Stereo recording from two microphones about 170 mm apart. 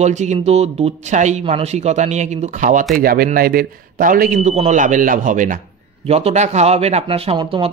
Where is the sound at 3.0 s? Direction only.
60° right (ahead or behind).